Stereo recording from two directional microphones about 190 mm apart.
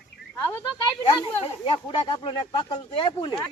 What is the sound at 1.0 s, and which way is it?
Speech, 25° left (ahead or behind).